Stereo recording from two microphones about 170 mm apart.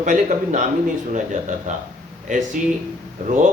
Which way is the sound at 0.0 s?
45° right (ahead or behind).